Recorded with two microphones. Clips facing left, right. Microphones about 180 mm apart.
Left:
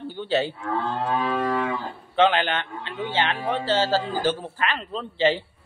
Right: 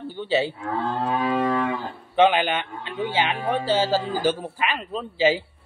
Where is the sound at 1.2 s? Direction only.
20° right (ahead or behind).